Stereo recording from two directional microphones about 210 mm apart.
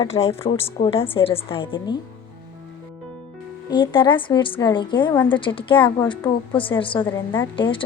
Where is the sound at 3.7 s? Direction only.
20° left (ahead or behind).